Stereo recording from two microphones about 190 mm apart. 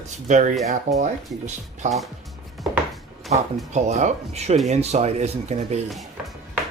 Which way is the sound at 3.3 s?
Centre (ahead or behind).